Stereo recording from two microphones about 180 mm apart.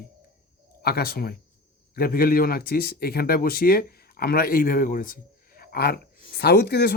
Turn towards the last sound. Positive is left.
turn(degrees=65)  # may be behind; listen again after turning